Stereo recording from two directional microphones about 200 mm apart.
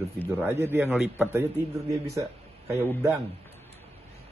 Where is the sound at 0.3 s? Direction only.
10° right (ahead or behind).